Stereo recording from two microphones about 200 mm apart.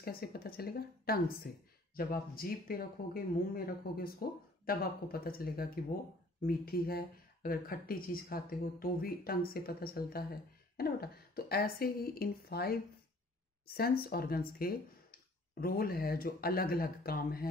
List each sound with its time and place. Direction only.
0.0 s speech: 50° left (ahead or behind)
13.7 s speech: 50° left (ahead or behind)